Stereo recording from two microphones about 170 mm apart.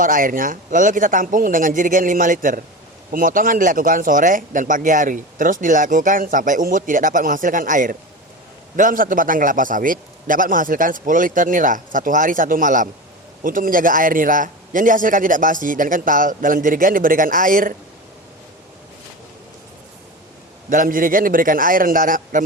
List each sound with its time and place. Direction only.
0.0 s speech: 55° right (ahead or behind)
20.7 s a man's voice: 55° right (ahead or behind)